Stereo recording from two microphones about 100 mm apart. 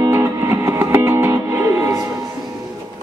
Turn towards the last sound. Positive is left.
turn(degrees=-20)  # may be behind; listen again after turning